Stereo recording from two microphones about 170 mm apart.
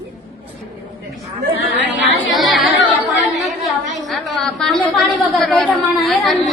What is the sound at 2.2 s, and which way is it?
Chatter, centre (ahead or behind).